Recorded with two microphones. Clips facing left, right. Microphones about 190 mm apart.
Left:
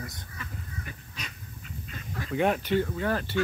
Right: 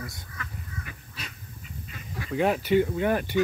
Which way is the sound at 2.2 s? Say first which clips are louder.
Right 2 dB; 5° right (ahead or behind).